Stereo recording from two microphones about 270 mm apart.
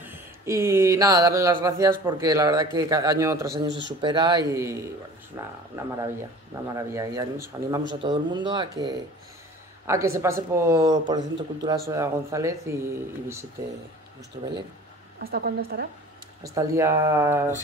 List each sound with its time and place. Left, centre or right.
0.0 s speech: centre
3.6 s a woman's voice: right
4.0 s speech: centre
14.4 s speech: right
15.1 s a woman's voice: right
16.4 s speech: centre